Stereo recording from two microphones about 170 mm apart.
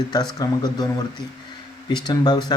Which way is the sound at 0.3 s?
25° left (ahead or behind).